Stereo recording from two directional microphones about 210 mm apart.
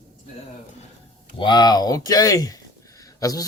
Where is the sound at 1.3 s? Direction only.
20° left (ahead or behind).